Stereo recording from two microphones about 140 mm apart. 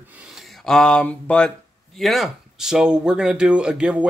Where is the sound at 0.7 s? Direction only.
5° left (ahead or behind).